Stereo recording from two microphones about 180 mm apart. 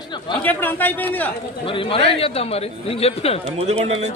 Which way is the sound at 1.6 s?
30° left (ahead or behind).